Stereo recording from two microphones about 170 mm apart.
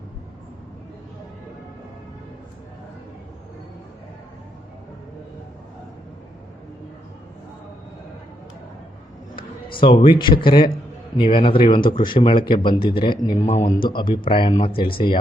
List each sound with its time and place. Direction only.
9.6 s a man's voice: 30° left (ahead or behind)
13.5 s a man's voice: 45° left (ahead or behind)
13.8 s speech: 25° left (ahead or behind)